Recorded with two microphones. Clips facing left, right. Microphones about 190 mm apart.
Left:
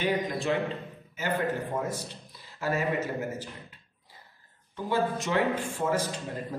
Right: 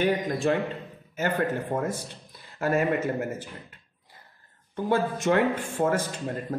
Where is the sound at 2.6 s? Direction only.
55° right (ahead or behind).